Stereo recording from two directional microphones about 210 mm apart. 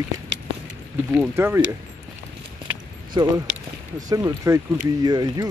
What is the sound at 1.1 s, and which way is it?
Speech, 10° right (ahead or behind).